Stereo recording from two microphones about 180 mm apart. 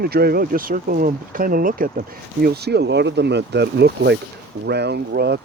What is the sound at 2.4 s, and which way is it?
Speech, 65° right (ahead or behind).